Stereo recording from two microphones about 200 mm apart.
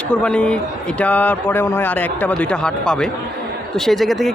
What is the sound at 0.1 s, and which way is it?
A man's voice, 5° left (ahead or behind).